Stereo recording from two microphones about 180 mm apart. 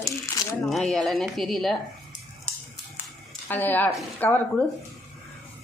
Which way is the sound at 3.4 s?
10° left (ahead or behind).